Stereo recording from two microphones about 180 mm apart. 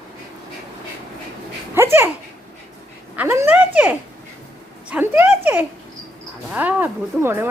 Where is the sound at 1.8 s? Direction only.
15° right (ahead or behind).